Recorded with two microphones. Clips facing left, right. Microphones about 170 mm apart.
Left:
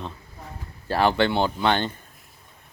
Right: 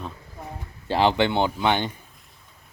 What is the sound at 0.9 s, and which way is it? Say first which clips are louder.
Speech: even; 20° right (ahead or behind).